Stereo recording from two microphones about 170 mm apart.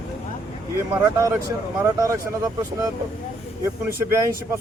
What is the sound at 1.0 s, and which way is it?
Speech, 20° right (ahead or behind).